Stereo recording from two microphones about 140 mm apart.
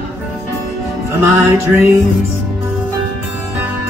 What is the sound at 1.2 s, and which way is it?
Music, 20° right (ahead or behind).